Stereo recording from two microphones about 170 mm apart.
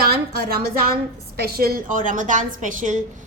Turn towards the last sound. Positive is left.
turn(degrees=-50)  # may be behind; listen again after turning